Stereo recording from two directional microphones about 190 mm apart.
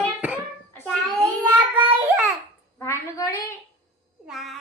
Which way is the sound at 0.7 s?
5° left (ahead or behind).